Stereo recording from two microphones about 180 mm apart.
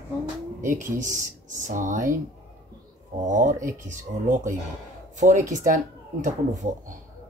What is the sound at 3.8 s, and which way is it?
Speech, 45° right (ahead or behind).